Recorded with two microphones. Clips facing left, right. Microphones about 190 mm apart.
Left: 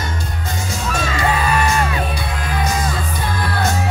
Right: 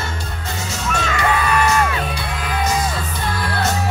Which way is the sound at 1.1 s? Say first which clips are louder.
Even; 25° left (ahead or behind).